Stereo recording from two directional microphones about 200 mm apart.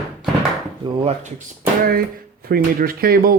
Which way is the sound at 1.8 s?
50° right (ahead or behind).